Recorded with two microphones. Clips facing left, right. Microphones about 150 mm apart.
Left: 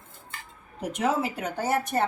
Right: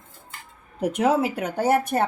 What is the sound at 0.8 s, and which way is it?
Speech, 60° right (ahead or behind).